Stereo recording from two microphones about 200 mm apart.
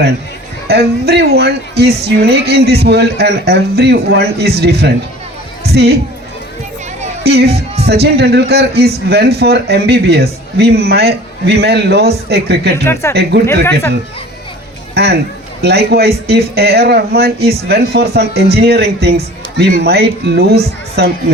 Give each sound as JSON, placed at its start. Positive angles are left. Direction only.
{"t": 0.7, "sound": "a woman's voice", "side_deg": -55}
{"t": 7.3, "sound": "speech", "side_deg": -55}
{"t": 12.7, "sound": "speech", "side_deg": 15}
{"t": 14.9, "sound": "speech", "side_deg": -55}